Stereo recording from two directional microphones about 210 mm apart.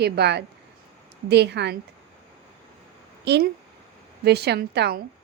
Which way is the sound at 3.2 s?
55° right (ahead or behind).